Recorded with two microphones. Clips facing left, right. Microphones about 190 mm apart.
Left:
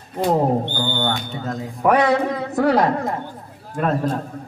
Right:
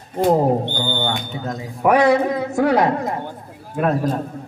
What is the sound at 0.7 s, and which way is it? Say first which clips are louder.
Speech: even; 15° right (ahead or behind).